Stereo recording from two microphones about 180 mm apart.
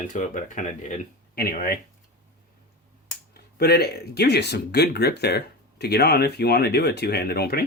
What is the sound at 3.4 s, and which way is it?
Speech, 60° left (ahead or behind).